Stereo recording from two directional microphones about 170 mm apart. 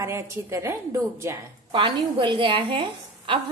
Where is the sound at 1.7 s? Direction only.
30° right (ahead or behind).